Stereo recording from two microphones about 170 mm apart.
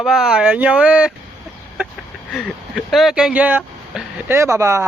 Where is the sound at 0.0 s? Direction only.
5° right (ahead or behind).